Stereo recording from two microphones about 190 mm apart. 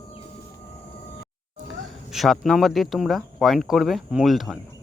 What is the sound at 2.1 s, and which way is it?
Speech, centre (ahead or behind).